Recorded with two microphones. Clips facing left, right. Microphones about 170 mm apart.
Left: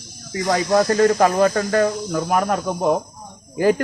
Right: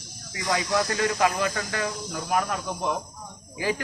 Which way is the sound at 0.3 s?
45° left (ahead or behind).